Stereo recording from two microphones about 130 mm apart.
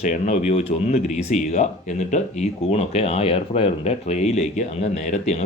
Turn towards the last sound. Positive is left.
turn(degrees=60)  # may be behind; listen again after turning